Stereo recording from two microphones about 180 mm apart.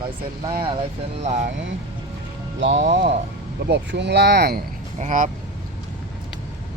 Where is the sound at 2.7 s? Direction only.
45° right (ahead or behind).